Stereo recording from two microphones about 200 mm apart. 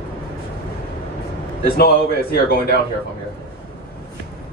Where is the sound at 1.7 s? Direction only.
50° left (ahead or behind).